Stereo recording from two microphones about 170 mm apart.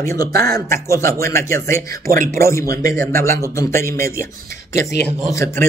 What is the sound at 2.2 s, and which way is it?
Speech, 15° left (ahead or behind).